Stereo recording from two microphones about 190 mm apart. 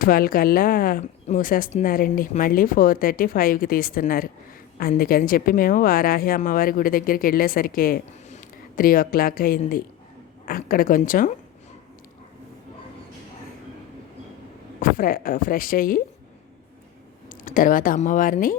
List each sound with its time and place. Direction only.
0.0 s speech: 50° left (ahead or behind)
14.8 s speech: 45° left (ahead or behind)
17.2 s speech: 45° left (ahead or behind)